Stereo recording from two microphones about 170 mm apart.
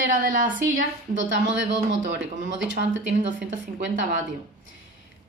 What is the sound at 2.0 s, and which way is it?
Speech, 90° right.